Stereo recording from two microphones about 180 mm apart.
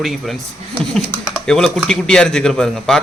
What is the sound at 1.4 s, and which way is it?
Speech, centre (ahead or behind).